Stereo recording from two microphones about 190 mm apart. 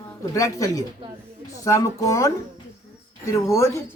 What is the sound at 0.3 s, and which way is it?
Speech, 15° left (ahead or behind).